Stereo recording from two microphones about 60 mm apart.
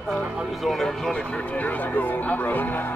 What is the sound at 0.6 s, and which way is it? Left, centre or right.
Speech, centre.